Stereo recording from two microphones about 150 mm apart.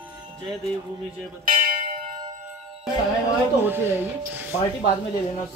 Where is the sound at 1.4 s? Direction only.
70° right (ahead or behind).